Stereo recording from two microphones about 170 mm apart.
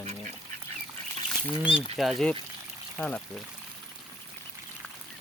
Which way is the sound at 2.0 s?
Centre (ahead or behind).